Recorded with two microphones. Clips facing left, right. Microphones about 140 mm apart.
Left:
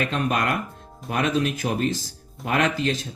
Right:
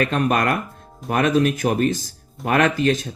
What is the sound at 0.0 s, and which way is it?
Speech, 55° right (ahead or behind).